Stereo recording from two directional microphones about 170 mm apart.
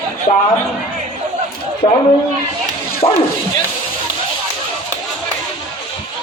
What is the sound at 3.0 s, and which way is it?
Speech, 25° left (ahead or behind).